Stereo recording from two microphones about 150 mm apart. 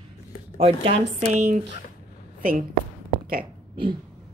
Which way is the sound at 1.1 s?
55° right (ahead or behind).